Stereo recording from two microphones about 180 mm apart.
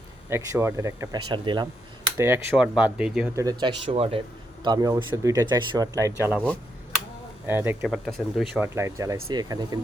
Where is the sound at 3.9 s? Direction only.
30° right (ahead or behind).